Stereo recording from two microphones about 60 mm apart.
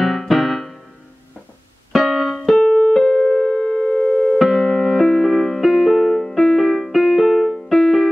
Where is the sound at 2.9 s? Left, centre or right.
Centre.